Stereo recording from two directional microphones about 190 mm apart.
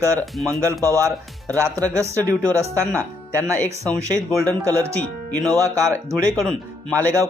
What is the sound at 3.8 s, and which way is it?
Speech, 5° left (ahead or behind).